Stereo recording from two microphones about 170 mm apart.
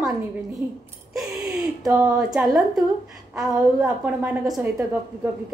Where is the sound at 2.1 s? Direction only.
5° right (ahead or behind).